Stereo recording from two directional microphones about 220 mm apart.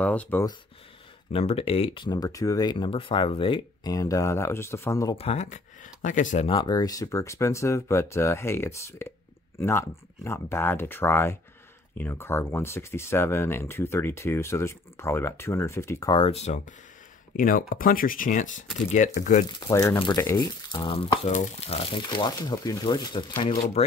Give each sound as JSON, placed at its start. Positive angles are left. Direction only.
{"t": 0.0, "sound": "speech", "side_deg": 5}
{"t": 1.3, "sound": "speech", "side_deg": 25}
{"t": 5.1, "sound": "speech", "side_deg": 25}
{"t": 17.4, "sound": "speech", "side_deg": 40}
{"t": 19.4, "sound": "speech", "side_deg": 15}